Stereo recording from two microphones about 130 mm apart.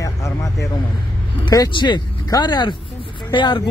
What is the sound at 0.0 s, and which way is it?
Vehicle, 25° left (ahead or behind).